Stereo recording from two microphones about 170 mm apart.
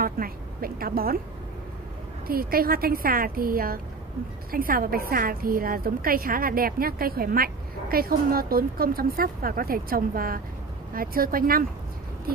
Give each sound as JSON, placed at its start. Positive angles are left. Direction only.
{"t": 0.0, "sound": "a woman's voice", "side_deg": -60}
{"t": 2.2, "sound": "a woman's voice", "side_deg": -60}